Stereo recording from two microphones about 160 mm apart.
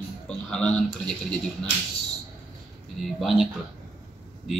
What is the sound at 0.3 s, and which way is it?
Speech, 5° left (ahead or behind).